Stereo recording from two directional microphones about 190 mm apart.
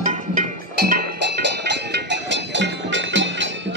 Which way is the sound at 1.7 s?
65° right (ahead or behind).